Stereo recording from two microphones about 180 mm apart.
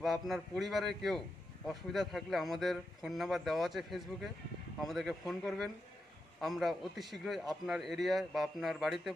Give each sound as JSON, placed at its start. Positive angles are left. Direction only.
{"t": 0.0, "sound": "a man's voice", "side_deg": 0}